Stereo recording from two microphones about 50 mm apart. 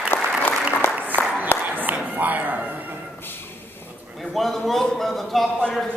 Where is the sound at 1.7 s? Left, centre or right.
Right.